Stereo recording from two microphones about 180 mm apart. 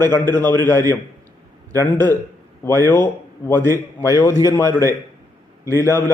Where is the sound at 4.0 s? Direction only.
20° left (ahead or behind).